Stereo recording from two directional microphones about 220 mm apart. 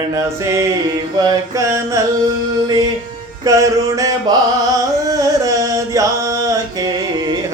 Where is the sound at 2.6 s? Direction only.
15° right (ahead or behind).